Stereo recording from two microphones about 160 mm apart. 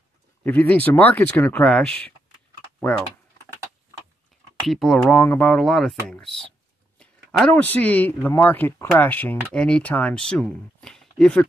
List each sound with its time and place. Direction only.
0.4 s speech: 10° left (ahead or behind)
4.6 s speech: centre (ahead or behind)